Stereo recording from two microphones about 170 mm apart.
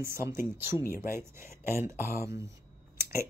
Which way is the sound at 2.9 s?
15° right (ahead or behind).